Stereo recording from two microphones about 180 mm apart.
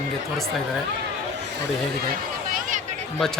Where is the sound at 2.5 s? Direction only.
45° right (ahead or behind).